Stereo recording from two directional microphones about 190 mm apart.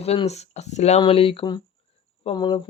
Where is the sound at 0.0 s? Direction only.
35° left (ahead or behind).